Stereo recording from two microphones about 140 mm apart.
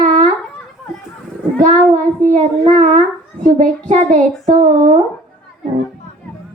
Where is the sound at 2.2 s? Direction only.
65° right (ahead or behind).